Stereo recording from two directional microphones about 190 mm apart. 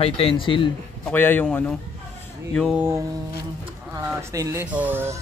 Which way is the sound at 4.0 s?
10° right (ahead or behind).